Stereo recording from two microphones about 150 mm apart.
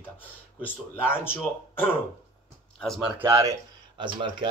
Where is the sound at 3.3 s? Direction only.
20° right (ahead or behind).